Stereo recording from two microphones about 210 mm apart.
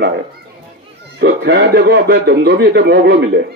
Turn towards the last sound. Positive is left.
turn(degrees=-50)  # may be behind; listen again after turning